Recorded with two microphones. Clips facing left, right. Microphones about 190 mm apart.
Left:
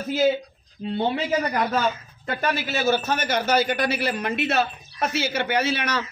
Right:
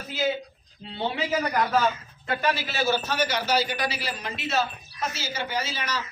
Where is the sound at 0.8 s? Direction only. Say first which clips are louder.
Left 13 dB; 50° left (ahead or behind).